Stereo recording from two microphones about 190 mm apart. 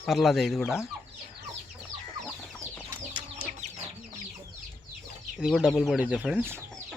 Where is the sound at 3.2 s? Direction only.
30° right (ahead or behind).